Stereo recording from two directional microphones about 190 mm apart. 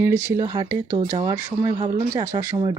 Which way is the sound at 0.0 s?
15° right (ahead or behind).